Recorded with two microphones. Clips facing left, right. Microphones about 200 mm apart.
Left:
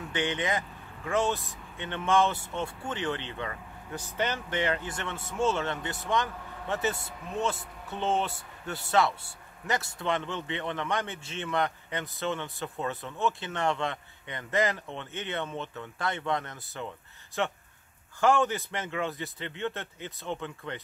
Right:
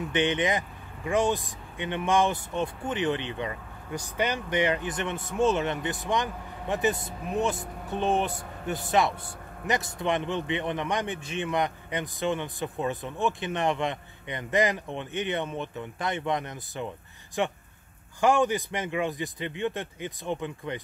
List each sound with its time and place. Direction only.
0.1 s speech: 20° right (ahead or behind)
9.9 s speech: 15° right (ahead or behind)